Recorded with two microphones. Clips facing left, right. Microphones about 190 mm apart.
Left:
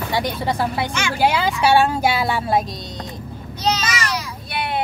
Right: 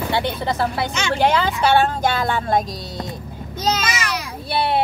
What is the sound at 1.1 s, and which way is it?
Speech, 10° left (ahead or behind).